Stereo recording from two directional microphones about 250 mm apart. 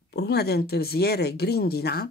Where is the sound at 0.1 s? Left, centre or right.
Left.